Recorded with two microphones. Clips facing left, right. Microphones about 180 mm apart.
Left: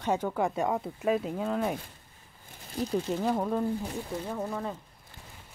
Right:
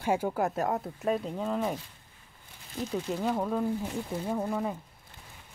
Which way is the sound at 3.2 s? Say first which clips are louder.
Right 2 dB; 5° left (ahead or behind).